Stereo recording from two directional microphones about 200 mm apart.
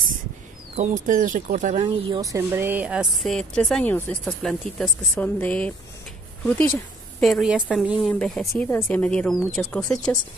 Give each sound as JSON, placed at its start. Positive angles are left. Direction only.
{"t": 0.7, "sound": "speech", "side_deg": -40}
{"t": 2.3, "sound": "speech", "side_deg": -10}
{"t": 7.2, "sound": "speech", "side_deg": 0}